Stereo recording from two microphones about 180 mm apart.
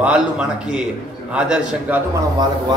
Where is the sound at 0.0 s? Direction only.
5° right (ahead or behind).